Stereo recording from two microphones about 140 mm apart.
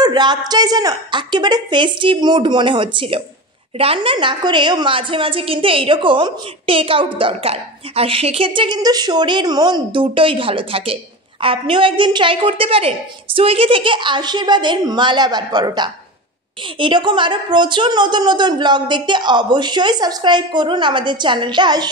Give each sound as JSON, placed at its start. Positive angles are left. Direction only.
{"t": 0.0, "sound": "a woman's voice", "side_deg": -30}